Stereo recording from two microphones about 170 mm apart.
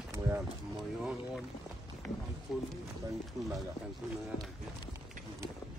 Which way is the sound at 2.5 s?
5° right (ahead or behind).